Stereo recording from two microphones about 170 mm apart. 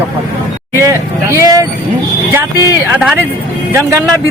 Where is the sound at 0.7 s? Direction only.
15° right (ahead or behind).